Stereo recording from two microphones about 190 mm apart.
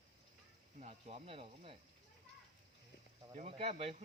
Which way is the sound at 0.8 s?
35° right (ahead or behind).